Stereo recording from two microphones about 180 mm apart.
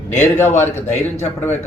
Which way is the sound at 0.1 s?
40° left (ahead or behind).